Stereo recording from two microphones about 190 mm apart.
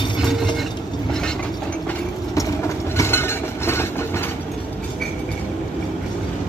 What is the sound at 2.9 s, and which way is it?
Vehicle, 10° left (ahead or behind).